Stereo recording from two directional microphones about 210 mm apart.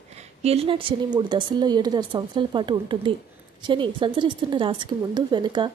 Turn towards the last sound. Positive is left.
turn(degrees=-20)  # may be behind; listen again after turning